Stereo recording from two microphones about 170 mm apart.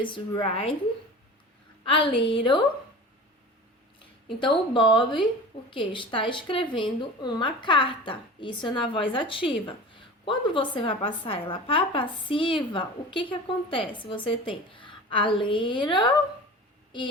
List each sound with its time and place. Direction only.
0.0 s a woman's voice: 30° left (ahead or behind)
1.8 s speech: 30° left (ahead or behind)
4.4 s speech: 30° left (ahead or behind)